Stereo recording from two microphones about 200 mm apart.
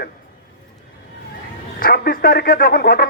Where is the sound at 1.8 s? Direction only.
45° left (ahead or behind).